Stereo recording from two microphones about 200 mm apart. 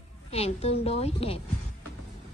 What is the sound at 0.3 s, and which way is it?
A woman's voice, 30° left (ahead or behind).